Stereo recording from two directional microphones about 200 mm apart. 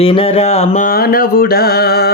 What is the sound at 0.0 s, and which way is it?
Mantra, 30° left (ahead or behind).